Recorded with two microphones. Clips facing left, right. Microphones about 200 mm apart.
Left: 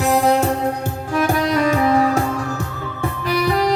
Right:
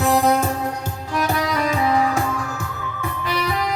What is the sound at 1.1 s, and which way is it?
Music, 50° left (ahead or behind).